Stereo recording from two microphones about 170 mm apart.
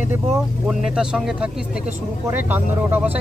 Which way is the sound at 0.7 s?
5° right (ahead or behind).